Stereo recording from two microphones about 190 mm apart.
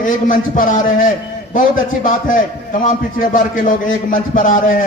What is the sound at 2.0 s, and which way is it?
A man's voice, 45° left (ahead or behind).